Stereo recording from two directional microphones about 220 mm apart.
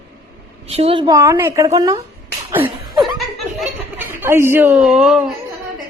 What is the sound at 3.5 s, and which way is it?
Chuckle, 10° right (ahead or behind).